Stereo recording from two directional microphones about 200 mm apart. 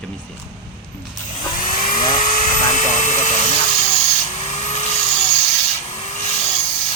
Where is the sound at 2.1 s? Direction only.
40° left (ahead or behind).